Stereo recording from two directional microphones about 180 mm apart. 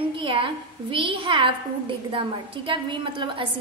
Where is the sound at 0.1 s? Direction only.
30° right (ahead or behind).